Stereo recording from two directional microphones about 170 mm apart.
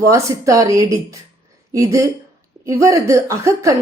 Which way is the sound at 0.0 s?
20° right (ahead or behind).